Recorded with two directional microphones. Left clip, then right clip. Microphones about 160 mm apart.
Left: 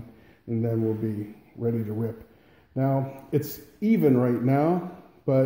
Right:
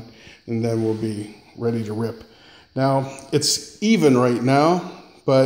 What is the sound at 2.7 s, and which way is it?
A man's voice, 5° right (ahead or behind).